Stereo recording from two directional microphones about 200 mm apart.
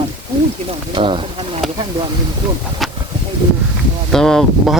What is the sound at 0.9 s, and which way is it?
Speech, 25° right (ahead or behind).